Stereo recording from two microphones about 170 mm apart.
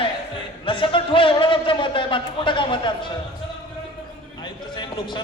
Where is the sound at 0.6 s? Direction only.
30° left (ahead or behind).